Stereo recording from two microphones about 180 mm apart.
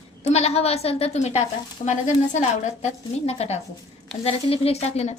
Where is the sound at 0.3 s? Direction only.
35° left (ahead or behind).